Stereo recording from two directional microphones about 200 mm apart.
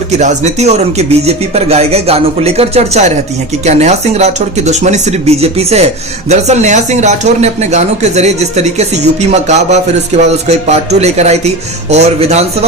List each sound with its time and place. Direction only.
0.2 s speech: 35° right (ahead or behind)